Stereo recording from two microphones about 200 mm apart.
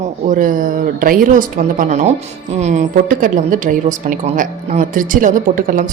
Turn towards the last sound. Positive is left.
turn(degrees=-40)  # may be behind; listen again after turning